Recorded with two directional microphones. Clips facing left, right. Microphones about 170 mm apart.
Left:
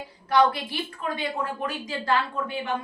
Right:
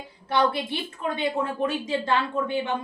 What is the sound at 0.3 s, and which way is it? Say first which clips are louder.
A woman's voice: left 2 dB; 25° right (ahead or behind).